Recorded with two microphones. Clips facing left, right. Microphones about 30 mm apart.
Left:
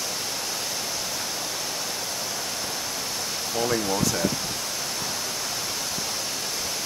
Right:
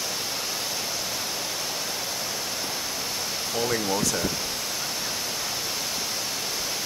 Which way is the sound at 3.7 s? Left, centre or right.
Centre.